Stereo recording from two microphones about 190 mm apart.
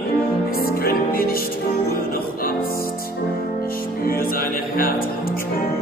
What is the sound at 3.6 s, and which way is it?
Music, 50° left (ahead or behind).